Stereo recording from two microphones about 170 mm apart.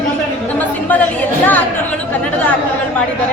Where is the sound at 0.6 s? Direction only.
10° left (ahead or behind).